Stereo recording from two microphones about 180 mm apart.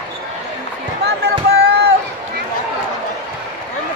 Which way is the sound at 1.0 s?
65° right (ahead or behind).